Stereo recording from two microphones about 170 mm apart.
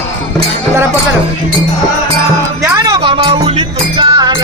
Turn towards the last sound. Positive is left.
turn(degrees=-30)  # may be behind; listen again after turning